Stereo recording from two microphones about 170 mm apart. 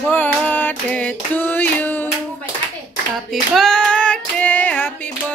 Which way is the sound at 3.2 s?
Centre (ahead or behind).